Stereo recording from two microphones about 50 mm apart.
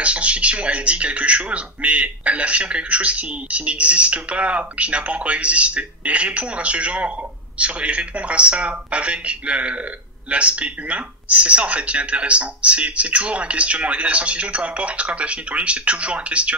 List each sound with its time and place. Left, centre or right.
0.0 s speech: right